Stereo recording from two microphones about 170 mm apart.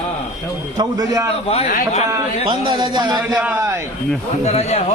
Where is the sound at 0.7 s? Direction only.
20° right (ahead or behind).